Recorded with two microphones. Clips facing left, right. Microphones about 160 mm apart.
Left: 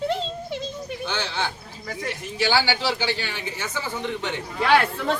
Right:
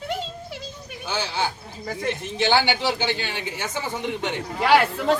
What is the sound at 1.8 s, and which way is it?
A man's voice, 25° right (ahead or behind).